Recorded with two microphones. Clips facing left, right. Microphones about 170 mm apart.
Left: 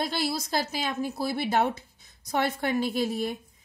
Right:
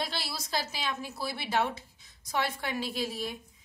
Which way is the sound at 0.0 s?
45° left (ahead or behind).